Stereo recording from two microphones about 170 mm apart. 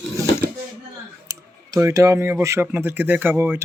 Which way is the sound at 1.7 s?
20° right (ahead or behind).